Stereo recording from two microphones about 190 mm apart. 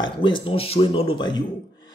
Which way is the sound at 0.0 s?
25° left (ahead or behind).